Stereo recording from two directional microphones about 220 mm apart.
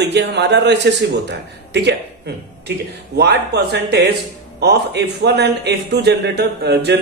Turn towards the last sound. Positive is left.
turn(degrees=-50)  # may be behind; listen again after turning